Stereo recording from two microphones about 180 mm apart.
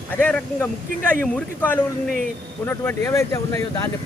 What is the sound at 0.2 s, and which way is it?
Speech, 10° left (ahead or behind).